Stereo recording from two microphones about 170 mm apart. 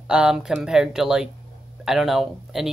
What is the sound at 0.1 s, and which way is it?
Speech, 5° right (ahead or behind).